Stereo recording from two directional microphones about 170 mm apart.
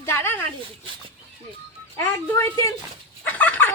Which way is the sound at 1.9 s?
15° left (ahead or behind).